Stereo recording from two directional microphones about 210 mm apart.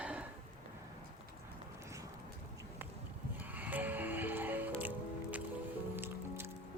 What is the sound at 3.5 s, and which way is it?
Music, 10° right (ahead or behind).